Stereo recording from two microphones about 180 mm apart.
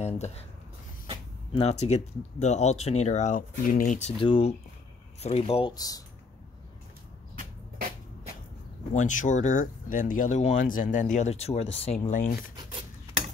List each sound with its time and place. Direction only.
0.0 s speech: 40° left (ahead or behind)
1.5 s speech: 35° left (ahead or behind)
4.2 s speech: 30° left (ahead or behind)
8.9 s speech: 45° left (ahead or behind)
12.5 s filing: 30° right (ahead or behind)